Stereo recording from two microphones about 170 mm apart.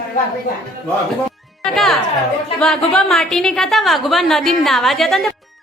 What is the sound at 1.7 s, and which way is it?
A woman's voice, centre (ahead or behind).